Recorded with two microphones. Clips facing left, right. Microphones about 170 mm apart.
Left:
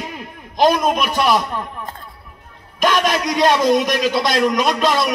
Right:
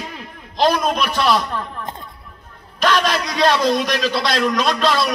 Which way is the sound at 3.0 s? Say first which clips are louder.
Left 2 dB; 20° left (ahead or behind).